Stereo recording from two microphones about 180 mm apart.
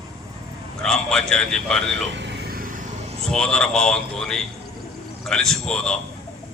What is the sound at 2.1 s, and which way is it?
Vehicle, 70° right (ahead or behind).